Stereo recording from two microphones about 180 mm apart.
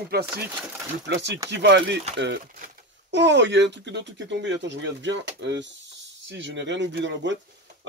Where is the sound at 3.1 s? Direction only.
80° right.